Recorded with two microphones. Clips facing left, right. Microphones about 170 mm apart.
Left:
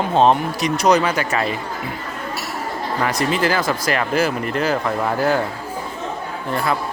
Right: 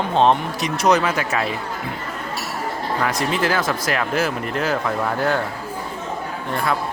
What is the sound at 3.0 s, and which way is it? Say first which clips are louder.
Speech: left 2 dB; centre (ahead or behind).